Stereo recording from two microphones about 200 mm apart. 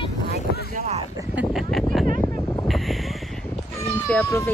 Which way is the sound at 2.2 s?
15° left (ahead or behind).